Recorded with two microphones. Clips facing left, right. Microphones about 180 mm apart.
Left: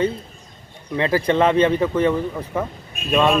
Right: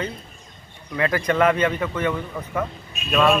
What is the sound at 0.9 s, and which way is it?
A man's voice, 30° left (ahead or behind).